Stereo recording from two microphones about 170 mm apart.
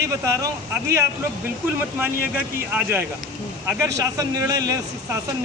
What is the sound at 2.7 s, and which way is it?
Speech, 10° right (ahead or behind).